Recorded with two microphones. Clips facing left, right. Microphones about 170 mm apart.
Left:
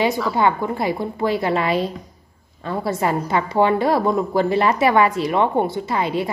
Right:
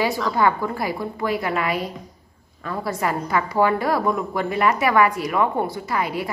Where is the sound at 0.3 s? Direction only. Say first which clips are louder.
Left 1 dB; 20° left (ahead or behind).